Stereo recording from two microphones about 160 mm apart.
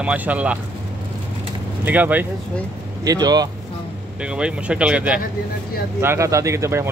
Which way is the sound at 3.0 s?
25° right (ahead or behind).